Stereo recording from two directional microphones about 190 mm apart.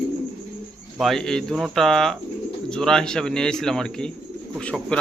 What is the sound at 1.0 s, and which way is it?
Speech, centre (ahead or behind).